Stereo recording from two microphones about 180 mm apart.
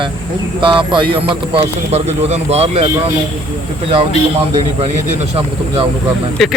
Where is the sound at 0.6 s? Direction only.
25° right (ahead or behind).